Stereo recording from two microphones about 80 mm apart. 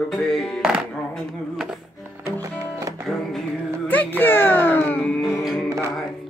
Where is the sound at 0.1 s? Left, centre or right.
Centre.